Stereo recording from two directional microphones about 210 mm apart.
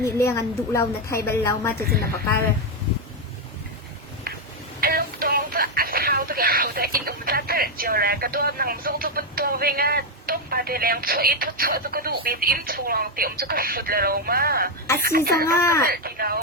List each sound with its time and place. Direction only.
0.0 s a woman's voice: 10° left (ahead or behind)
4.8 s speech: 45° right (ahead or behind)
15.4 s a woman's voice: 10° left (ahead or behind)
15.8 s speech: 45° right (ahead or behind)